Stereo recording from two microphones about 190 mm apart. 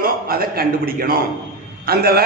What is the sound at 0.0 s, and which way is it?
A man's voice, 50° right (ahead or behind).